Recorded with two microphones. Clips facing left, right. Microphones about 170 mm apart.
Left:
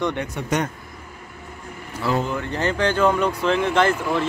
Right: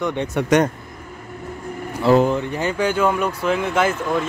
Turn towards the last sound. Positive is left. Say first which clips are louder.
# left 1 dB
turn(degrees=-5)  # may be behind; listen again after turning